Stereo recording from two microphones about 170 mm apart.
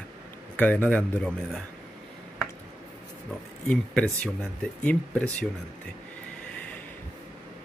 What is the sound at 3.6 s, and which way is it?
A man's voice, 5° left (ahead or behind).